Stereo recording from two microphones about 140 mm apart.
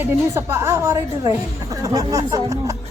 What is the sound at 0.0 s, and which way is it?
A woman's voice, 15° right (ahead or behind).